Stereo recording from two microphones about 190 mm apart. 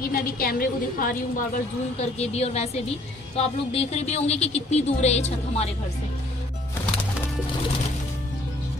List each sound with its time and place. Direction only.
0.0 s a woman's voice: 50° left (ahead or behind)
2.0 s speech: 35° left (ahead or behind)